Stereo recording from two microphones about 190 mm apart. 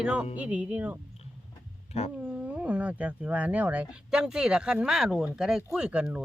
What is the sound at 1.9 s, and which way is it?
Speech, 35° left (ahead or behind).